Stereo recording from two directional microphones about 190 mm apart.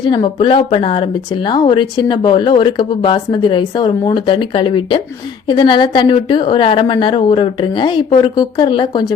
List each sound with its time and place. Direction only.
0.0 s speech: 25° left (ahead or behind)